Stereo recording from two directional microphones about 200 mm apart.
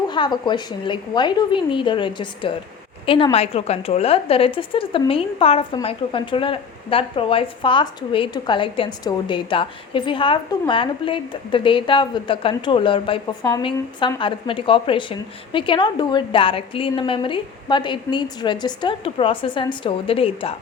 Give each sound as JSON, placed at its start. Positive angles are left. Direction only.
{"t": 0.1, "sound": "a woman's voice", "side_deg": 20}